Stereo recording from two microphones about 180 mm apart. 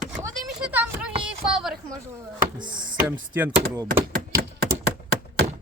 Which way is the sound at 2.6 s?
25° right (ahead or behind).